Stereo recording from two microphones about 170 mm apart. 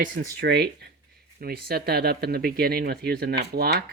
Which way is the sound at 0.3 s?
75° right (ahead or behind).